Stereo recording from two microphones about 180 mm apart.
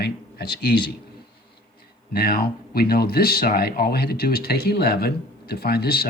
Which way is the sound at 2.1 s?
55° left (ahead or behind).